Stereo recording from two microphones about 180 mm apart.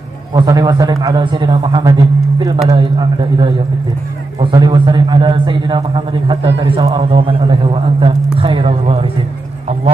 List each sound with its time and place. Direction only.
0.3 s a man's voice: 25° right (ahead or behind)